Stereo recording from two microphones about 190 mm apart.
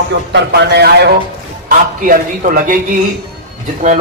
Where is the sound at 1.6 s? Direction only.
45° right (ahead or behind).